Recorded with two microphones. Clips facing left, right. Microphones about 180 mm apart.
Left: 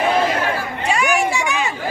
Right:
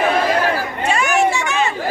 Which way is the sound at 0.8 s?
15° left (ahead or behind).